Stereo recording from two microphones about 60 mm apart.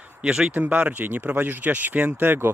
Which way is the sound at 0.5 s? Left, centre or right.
Right.